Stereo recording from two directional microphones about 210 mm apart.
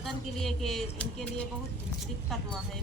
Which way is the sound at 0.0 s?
Centre (ahead or behind).